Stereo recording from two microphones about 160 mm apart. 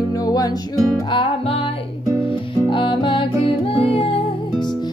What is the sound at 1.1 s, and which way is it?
Music, 35° left (ahead or behind).